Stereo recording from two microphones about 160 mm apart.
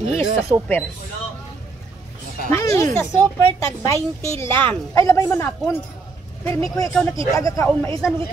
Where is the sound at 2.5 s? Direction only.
20° left (ahead or behind).